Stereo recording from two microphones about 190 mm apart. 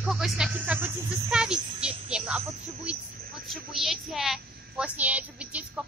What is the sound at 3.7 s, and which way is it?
A woman's voice, centre (ahead or behind).